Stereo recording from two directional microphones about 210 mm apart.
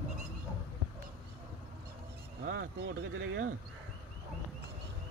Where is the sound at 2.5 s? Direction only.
65° right (ahead or behind).